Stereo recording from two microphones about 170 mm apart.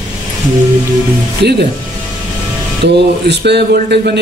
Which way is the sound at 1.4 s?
80° right.